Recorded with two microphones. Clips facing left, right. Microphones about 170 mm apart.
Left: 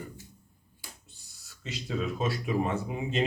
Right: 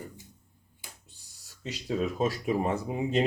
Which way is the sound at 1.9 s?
40° right (ahead or behind).